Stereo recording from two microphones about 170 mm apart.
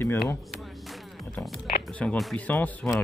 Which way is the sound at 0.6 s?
Centre (ahead or behind).